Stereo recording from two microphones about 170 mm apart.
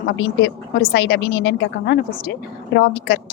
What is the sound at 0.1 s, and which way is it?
A woman's voice, 85° left.